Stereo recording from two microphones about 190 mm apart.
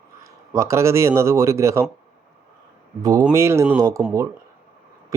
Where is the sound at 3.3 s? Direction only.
15° right (ahead or behind).